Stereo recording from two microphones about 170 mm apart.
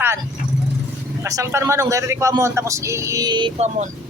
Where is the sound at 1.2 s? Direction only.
15° right (ahead or behind).